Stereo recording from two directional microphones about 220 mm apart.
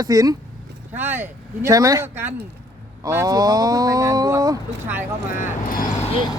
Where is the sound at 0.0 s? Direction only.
15° right (ahead or behind).